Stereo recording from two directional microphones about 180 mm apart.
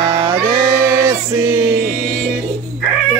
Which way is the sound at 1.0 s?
25° right (ahead or behind).